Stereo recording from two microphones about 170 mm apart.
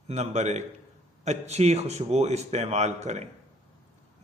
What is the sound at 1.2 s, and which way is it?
A man's voice, 40° right (ahead or behind).